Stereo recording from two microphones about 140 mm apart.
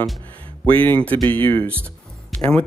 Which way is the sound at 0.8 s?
10° left (ahead or behind).